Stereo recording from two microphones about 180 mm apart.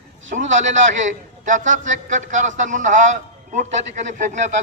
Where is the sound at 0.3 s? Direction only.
45° right (ahead or behind).